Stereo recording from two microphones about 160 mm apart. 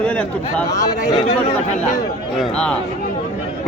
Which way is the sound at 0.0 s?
5° left (ahead or behind).